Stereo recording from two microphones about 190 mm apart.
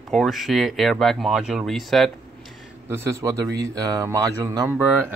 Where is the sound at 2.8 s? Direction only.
15° right (ahead or behind).